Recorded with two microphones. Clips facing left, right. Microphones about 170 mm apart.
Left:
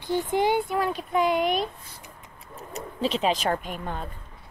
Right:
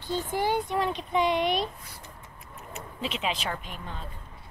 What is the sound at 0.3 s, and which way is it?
Speech, 20° left (ahead or behind).